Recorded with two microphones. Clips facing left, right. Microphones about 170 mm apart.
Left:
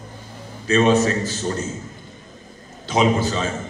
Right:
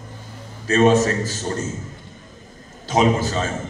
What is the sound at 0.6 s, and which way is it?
A man's voice, 45° right (ahead or behind).